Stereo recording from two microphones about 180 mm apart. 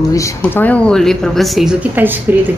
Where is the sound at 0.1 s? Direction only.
15° left (ahead or behind).